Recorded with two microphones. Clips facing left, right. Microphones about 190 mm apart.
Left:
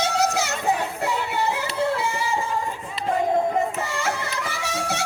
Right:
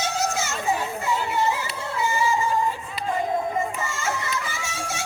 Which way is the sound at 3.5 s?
65° left (ahead or behind).